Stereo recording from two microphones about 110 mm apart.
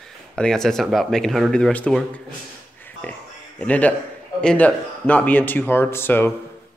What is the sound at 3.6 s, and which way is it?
Speech, 15° left (ahead or behind).